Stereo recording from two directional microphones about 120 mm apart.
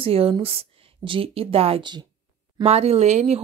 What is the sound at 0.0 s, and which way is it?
Speech, 50° right (ahead or behind).